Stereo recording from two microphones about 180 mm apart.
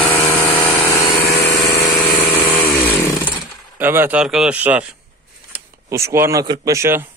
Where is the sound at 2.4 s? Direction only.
35° left (ahead or behind).